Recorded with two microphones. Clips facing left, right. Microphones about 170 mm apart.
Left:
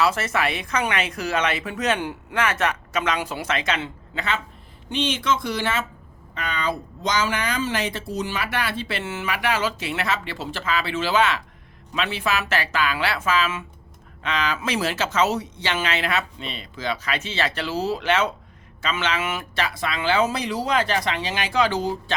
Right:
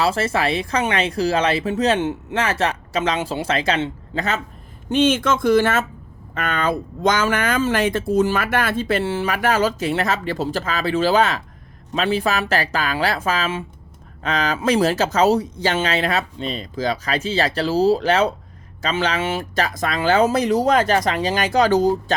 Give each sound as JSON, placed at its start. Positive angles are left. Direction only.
{"t": 0.0, "sound": "a woman's voice", "side_deg": -30}
{"t": 19.6, "sound": "speech", "side_deg": -45}